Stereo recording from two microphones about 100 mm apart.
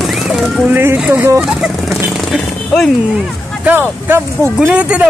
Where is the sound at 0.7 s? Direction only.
20° right (ahead or behind).